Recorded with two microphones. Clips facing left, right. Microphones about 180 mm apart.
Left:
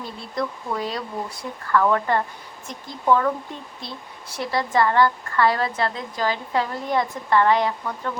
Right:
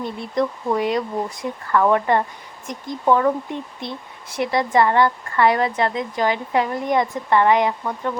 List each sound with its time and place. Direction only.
0.0 s speech: 20° right (ahead or behind)